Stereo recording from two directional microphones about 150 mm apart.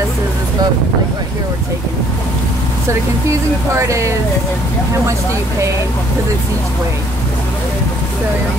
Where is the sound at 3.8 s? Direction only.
20° right (ahead or behind).